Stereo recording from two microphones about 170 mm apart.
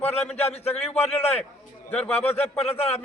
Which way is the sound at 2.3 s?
35° left (ahead or behind).